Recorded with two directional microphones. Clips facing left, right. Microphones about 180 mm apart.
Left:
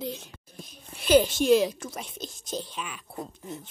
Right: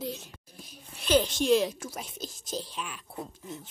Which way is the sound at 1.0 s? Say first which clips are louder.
Left 4 dB; 5° left (ahead or behind).